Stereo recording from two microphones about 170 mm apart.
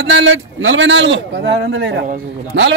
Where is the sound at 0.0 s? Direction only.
90° right.